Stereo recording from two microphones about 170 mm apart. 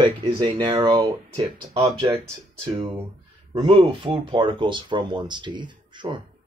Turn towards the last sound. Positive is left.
turn(degrees=-30)  # may be behind; listen again after turning